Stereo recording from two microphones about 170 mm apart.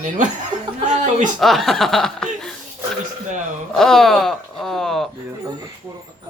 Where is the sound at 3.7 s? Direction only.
Centre (ahead or behind).